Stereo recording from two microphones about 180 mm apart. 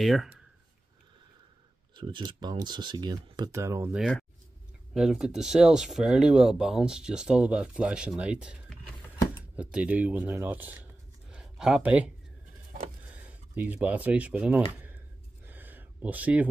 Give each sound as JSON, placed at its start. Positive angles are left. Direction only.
{"t": 0.0, "sound": "speech", "side_deg": 0}
{"t": 2.0, "sound": "speech", "side_deg": -25}
{"t": 4.0, "sound": "speech", "side_deg": 0}
{"t": 14.7, "sound": "a sound", "side_deg": -10}